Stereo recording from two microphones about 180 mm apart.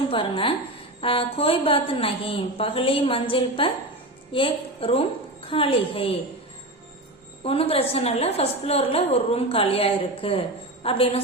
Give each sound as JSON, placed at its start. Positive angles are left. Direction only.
{"t": 0.1, "sound": "a woman's voice", "side_deg": 30}
{"t": 7.4, "sound": "a woman's voice", "side_deg": 30}